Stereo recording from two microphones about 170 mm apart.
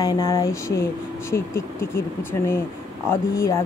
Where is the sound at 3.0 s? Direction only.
15° left (ahead or behind).